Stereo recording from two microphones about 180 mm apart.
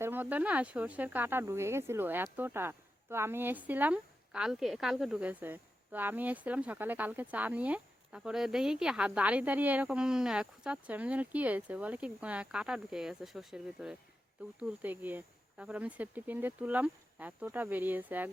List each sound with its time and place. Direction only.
0.0 s speech: 10° right (ahead or behind)